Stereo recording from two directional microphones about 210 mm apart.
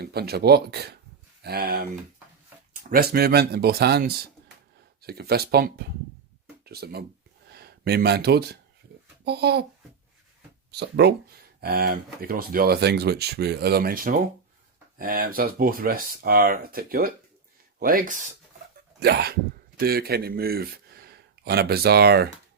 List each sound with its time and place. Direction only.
0.0 s speech: 50° right (ahead or behind)
2.9 s speech: 50° right (ahead or behind)
10.7 s speech: 50° right (ahead or behind); by 18.3 s 35° right (ahead or behind)
18.9 s speech: 50° right (ahead or behind)